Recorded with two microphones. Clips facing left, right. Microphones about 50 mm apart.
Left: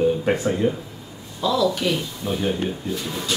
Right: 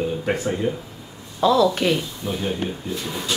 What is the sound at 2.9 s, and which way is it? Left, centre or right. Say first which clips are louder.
Speech: even; centre.